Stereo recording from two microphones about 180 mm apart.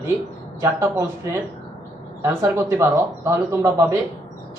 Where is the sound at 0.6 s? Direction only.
15° right (ahead or behind).